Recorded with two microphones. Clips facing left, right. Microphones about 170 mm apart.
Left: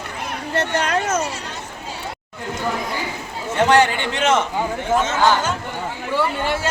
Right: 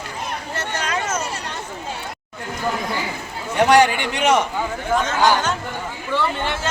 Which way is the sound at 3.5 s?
15° right (ahead or behind).